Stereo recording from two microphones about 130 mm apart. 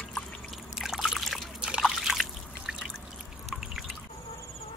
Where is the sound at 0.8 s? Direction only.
Centre (ahead or behind).